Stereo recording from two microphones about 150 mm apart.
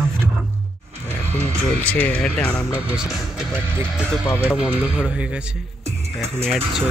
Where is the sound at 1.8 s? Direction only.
10° left (ahead or behind).